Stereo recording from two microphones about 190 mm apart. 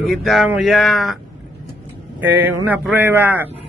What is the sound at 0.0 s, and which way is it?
Speech, centre (ahead or behind).